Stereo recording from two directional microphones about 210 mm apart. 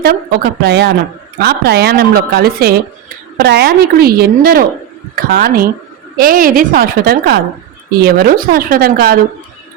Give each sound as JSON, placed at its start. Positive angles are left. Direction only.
{"t": 0.0, "sound": "a woman's voice", "side_deg": -45}